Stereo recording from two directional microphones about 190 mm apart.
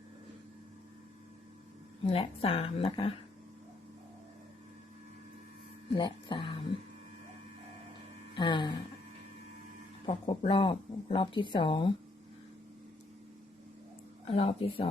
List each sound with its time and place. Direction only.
2.0 s speech: 30° left (ahead or behind)
5.9 s speech: 25° left (ahead or behind)
8.4 s speech: 25° left (ahead or behind)
10.1 s speech: 30° left (ahead or behind)
14.3 s speech: 30° left (ahead or behind)